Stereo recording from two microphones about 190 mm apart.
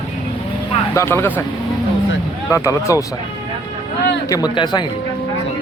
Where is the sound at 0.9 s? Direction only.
10° left (ahead or behind).